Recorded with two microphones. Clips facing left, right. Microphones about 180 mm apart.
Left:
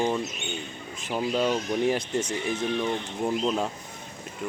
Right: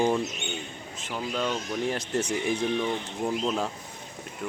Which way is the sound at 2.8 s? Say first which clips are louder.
Left 1 dB; 5° left (ahead or behind).